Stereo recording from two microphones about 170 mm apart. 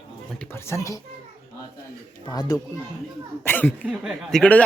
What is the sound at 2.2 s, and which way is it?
Speech, 20° left (ahead or behind).